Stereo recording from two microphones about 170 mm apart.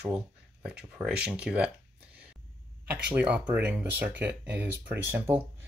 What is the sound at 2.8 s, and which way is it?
Speech, 10° right (ahead or behind).